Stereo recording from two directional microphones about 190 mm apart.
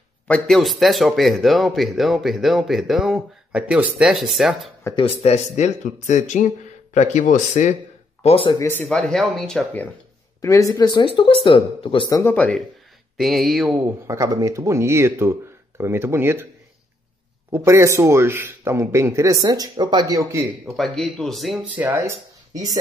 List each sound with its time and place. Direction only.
0.3 s speech: centre (ahead or behind)
4.9 s speech: 30° left (ahead or behind)
8.5 s speech: 15° left (ahead or behind)
8.8 s speech: centre (ahead or behind)
10.4 s speech: 15° left (ahead or behind)
12.2 s a man's voice: 10° left (ahead or behind); by 16.4 s 10° right (ahead or behind)
17.5 s a man's voice: 15° right (ahead or behind)
20.6 s speech: centre (ahead or behind); by 22.8 s 20° right (ahead or behind)